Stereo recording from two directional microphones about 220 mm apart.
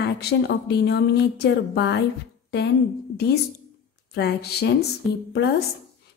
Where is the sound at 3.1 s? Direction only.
45° left (ahead or behind).